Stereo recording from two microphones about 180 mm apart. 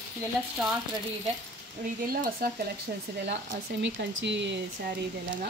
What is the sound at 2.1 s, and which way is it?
Speech, 55° right (ahead or behind).